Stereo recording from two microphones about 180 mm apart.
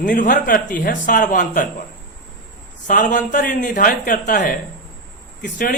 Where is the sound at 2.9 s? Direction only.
45° left (ahead or behind).